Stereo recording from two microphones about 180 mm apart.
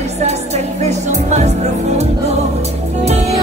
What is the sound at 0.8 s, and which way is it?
Music, 40° right (ahead or behind).